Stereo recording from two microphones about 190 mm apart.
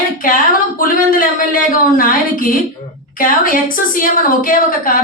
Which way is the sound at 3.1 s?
45° left (ahead or behind).